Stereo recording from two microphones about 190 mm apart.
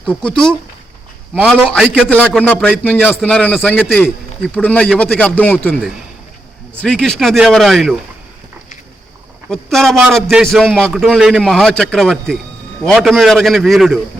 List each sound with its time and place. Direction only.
0.0 s speech: 5° left (ahead or behind)
1.4 s a man's voice: centre (ahead or behind)
9.5 s a man's voice: centre (ahead or behind)